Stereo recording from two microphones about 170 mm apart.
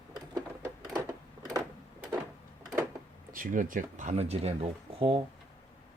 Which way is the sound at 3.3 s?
50° right (ahead or behind).